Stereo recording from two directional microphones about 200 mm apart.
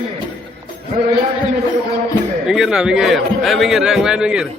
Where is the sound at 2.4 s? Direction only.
Centre (ahead or behind).